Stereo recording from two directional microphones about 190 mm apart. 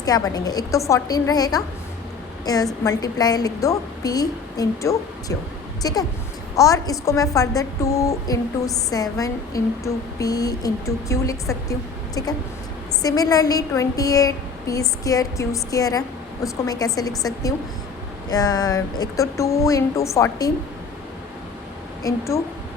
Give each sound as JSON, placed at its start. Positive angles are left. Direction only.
{"t": 0.0, "sound": "a woman's voice", "side_deg": 20}
{"t": 22.0, "sound": "a woman's voice", "side_deg": 15}